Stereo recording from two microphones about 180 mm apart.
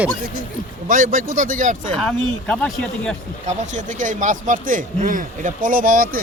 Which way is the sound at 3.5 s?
45° right (ahead or behind).